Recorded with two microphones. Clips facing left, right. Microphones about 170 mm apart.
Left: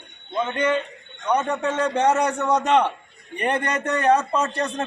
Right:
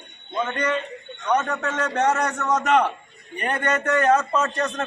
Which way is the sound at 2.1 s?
10° left (ahead or behind).